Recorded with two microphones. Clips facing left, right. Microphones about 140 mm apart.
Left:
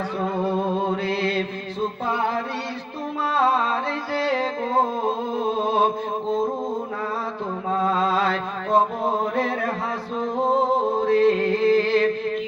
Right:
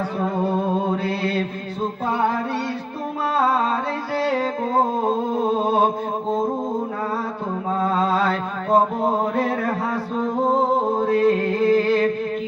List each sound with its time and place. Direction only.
0.9 s mantra: 45° right (ahead or behind)
7.7 s mantra: 45° right (ahead or behind)
9.3 s music: 45° right (ahead or behind)
11.0 s a sound: 50° right (ahead or behind)